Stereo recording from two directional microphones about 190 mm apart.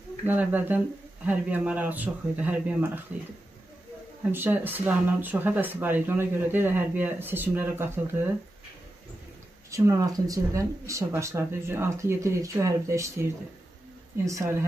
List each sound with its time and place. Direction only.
0.3 s speech: 10° right (ahead or behind)
4.3 s speech: 10° right (ahead or behind)
9.7 s speech: 15° right (ahead or behind)